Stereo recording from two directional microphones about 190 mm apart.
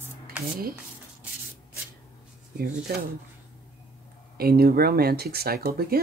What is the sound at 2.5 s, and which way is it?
Speech, 50° right (ahead or behind).